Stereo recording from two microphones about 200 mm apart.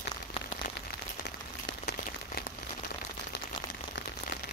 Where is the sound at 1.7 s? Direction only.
55° left (ahead or behind).